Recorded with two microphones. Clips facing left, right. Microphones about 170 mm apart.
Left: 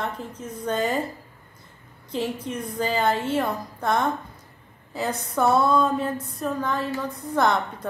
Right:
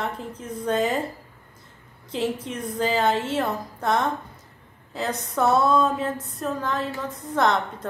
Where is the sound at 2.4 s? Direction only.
Centre (ahead or behind).